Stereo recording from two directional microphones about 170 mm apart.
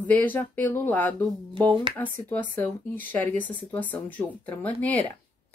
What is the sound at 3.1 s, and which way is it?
Speech, 10° left (ahead or behind).